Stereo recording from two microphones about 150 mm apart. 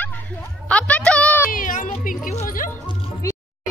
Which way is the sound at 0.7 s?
10° left (ahead or behind).